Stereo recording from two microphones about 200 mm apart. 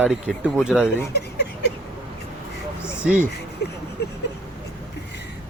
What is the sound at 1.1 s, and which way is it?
Speech, 55° left (ahead or behind).